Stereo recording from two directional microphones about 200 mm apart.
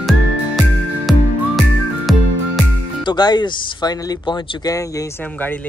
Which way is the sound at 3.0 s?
20° left (ahead or behind).